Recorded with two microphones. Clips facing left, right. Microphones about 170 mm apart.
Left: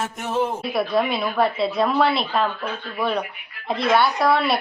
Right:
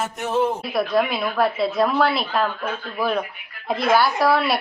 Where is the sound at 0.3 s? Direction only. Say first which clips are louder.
Right 1 dB; centre (ahead or behind).